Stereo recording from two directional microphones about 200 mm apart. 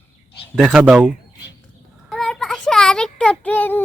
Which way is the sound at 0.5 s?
5° right (ahead or behind).